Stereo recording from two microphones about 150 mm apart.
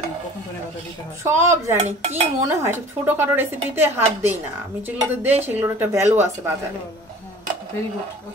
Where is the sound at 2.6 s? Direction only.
15° right (ahead or behind).